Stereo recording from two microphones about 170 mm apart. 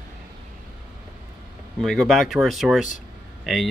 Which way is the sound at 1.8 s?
Centre (ahead or behind).